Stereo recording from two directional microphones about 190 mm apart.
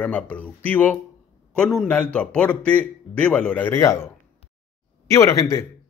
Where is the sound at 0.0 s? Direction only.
5° left (ahead or behind).